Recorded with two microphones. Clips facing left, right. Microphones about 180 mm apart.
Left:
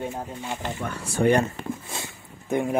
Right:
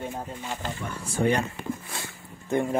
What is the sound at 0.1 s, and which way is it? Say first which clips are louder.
Speech: left 2 dB; 15° left (ahead or behind).